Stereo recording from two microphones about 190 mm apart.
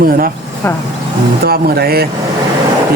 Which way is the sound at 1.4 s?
55° right (ahead or behind).